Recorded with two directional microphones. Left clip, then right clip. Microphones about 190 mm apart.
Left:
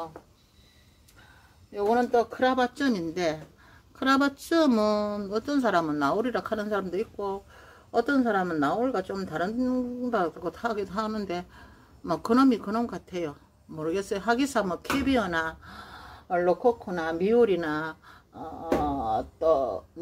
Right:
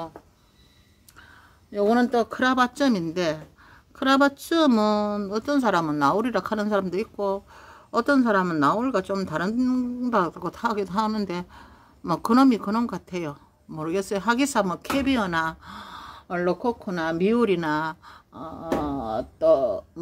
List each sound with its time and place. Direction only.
1.7 s speech: 65° right (ahead or behind)